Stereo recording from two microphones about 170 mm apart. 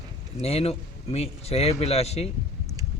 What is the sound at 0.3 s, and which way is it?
A man's voice, 35° left (ahead or behind).